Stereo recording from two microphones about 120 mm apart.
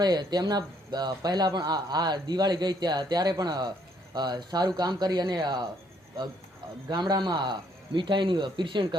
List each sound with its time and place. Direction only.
0.0 s speech: 35° right (ahead or behind)
6.9 s speech: 35° right (ahead or behind)